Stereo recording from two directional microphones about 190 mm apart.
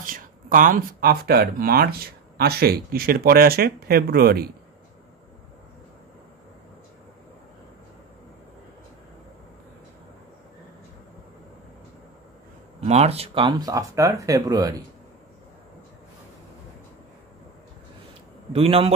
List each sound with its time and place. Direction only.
0.0 s speech: 45° right (ahead or behind)
12.8 s speech: 35° right (ahead or behind); by 14.8 s 20° right (ahead or behind)
18.5 s a man's voice: 30° right (ahead or behind)